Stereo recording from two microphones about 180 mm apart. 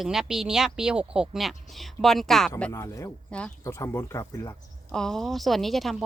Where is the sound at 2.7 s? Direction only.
15° left (ahead or behind).